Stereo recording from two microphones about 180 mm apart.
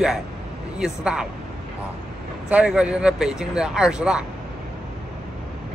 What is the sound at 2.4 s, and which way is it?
Speech, 5° right (ahead or behind).